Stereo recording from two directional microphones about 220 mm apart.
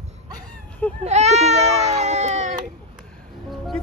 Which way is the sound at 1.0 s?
30° right (ahead or behind).